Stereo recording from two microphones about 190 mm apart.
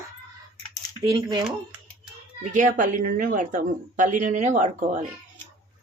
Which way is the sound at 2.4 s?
40° right (ahead or behind).